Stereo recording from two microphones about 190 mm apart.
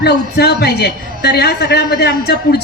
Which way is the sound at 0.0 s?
60° left (ahead or behind).